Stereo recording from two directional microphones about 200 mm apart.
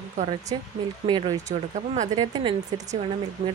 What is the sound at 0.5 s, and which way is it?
Speech, 25° right (ahead or behind).